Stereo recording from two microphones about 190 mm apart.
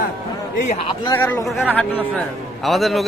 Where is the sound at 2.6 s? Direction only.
Centre (ahead or behind).